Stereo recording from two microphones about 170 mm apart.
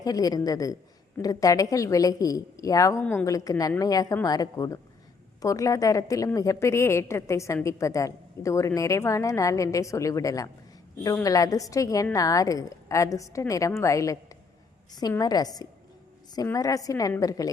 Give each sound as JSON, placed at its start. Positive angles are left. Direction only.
{"t": 0.0, "sound": "a woman's voice", "side_deg": 20}
{"t": 3.0, "sound": "a woman's voice", "side_deg": 10}
{"t": 3.2, "sound": "a woman's voice", "side_deg": 20}